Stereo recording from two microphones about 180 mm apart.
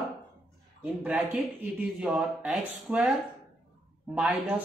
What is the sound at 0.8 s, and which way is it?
Speech, 10° right (ahead or behind).